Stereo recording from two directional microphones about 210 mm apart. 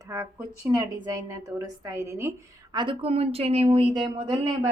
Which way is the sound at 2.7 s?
25° right (ahead or behind).